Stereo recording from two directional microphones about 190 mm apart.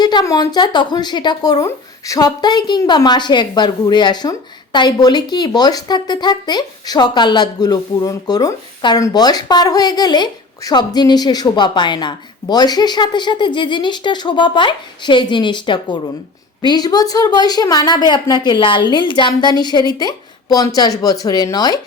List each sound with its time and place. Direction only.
0.0 s speech: 20° left (ahead or behind)